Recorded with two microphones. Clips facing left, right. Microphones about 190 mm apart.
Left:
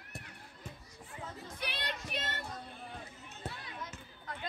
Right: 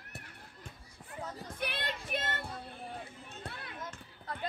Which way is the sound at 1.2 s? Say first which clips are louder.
Right 4 dB; 50° right (ahead or behind).